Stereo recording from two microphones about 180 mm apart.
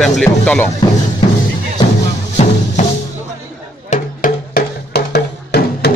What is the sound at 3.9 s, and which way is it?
Music, 50° left (ahead or behind).